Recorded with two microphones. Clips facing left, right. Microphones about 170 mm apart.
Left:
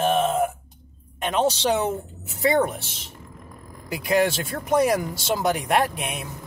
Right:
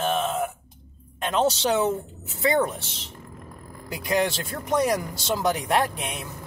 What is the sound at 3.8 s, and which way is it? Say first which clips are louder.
Speech: left 3 dB; 5° left (ahead or behind).